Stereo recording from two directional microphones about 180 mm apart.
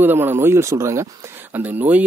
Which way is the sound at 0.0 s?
10° right (ahead or behind).